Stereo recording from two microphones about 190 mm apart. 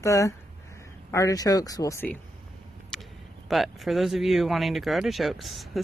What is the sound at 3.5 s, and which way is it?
Speech, centre (ahead or behind).